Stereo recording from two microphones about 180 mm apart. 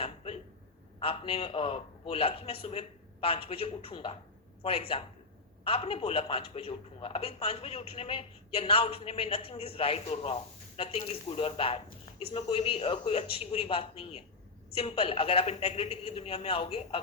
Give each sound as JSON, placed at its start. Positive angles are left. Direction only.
{"t": 0.9, "sound": "a man's voice", "side_deg": 30}